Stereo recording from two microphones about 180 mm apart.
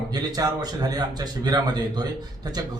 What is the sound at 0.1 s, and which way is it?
Speech, 20° right (ahead or behind).